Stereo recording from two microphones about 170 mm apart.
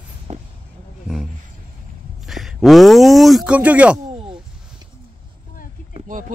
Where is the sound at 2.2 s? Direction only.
Centre (ahead or behind).